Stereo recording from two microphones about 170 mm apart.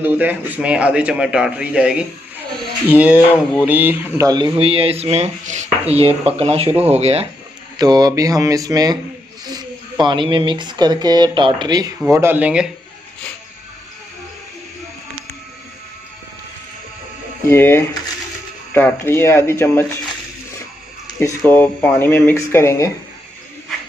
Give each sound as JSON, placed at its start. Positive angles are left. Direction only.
{"t": 0.0, "sound": "a man's voice", "side_deg": -10}
{"t": 4.3, "sound": "speech", "side_deg": -30}
{"t": 7.7, "sound": "speech", "side_deg": -25}
{"t": 12.1, "sound": "a man's voice", "side_deg": -15}
{"t": 17.5, "sound": "speech", "side_deg": 15}
{"t": 21.5, "sound": "speech", "side_deg": 10}